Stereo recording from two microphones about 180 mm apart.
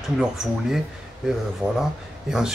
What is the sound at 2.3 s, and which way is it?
Speech, 5° right (ahead or behind).